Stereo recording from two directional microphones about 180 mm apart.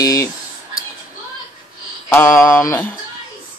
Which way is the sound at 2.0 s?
10° left (ahead or behind).